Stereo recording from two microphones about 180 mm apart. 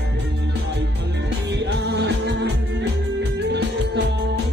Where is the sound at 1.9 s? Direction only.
70° right (ahead or behind).